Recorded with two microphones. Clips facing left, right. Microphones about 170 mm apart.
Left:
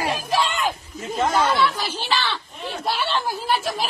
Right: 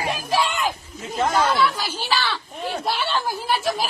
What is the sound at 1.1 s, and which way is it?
Speech, centre (ahead or behind).